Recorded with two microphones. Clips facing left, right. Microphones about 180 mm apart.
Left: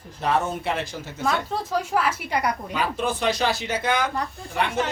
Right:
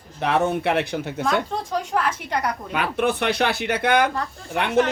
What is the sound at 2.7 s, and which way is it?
Speech, 60° right (ahead or behind).